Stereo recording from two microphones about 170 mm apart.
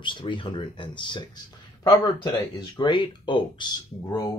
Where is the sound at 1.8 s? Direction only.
15° left (ahead or behind).